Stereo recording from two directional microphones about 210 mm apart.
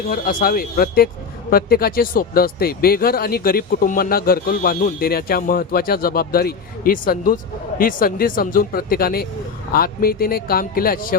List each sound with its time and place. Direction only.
0.1 s a man's voice: 40° left (ahead or behind)